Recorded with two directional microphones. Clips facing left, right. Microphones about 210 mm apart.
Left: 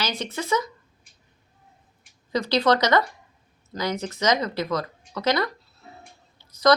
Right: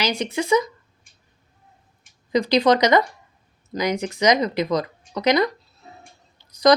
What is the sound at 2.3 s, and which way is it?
Speech, 15° right (ahead or behind).